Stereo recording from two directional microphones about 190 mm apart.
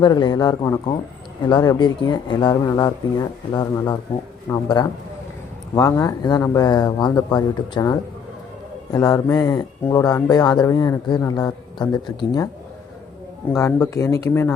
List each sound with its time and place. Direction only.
0.0 s speech: 25° left (ahead or behind)
13.5 s speech: 15° left (ahead or behind)